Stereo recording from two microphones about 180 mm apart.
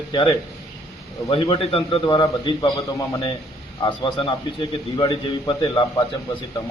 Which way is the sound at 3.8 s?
30° left (ahead or behind).